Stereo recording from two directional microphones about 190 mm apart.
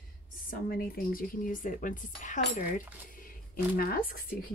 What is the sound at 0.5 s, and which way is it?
Speech, 50° left (ahead or behind).